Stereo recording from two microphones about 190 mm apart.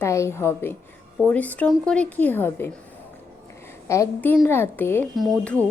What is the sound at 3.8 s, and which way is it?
Speech, 15° left (ahead or behind).